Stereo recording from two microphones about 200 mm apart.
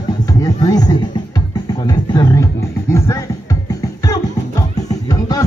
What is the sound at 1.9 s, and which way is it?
Music, 20° left (ahead or behind).